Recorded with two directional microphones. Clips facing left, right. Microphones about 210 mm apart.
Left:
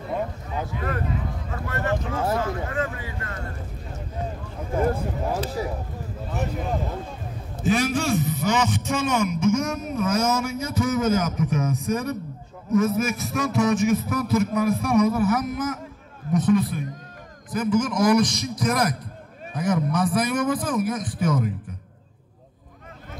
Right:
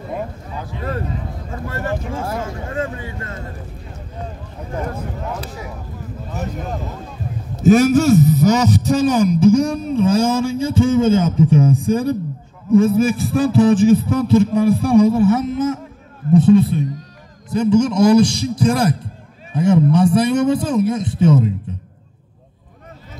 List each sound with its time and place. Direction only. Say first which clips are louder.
0.7 s a man's voice: right 5 dB; 30° right (ahead or behind)
7.6 s a man's voice: right 11 dB; 45° right (ahead or behind); by 21.5 s 25° right (ahead or behind)